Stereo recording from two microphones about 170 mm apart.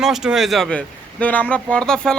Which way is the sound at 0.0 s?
5° right (ahead or behind).